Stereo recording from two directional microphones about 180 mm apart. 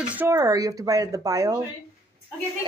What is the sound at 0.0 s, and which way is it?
Speech, 10° right (ahead or behind).